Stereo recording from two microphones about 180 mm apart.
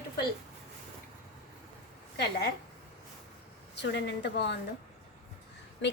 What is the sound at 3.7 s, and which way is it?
Speech, 75° left (ahead or behind).